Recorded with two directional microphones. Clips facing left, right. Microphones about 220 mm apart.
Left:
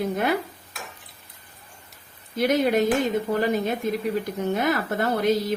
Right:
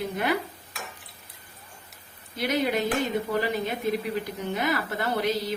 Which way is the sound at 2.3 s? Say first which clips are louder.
Left 5 dB; 50° left (ahead or behind).